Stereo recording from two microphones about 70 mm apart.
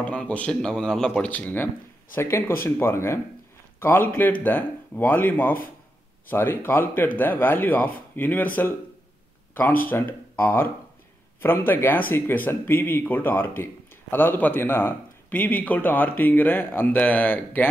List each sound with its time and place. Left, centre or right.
0.0 s speech: centre
1.3 s speech: left
2.1 s speech: left
3.8 s speech: left